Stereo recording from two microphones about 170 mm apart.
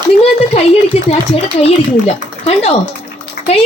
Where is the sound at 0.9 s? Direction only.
35° left (ahead or behind).